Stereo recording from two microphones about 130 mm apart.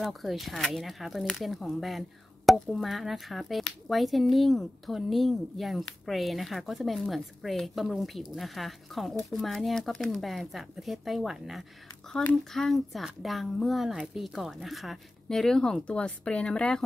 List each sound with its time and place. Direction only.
0.0 s speech: centre (ahead or behind)